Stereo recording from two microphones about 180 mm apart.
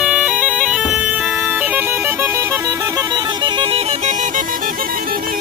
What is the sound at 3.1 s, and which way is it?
Music, 25° right (ahead or behind).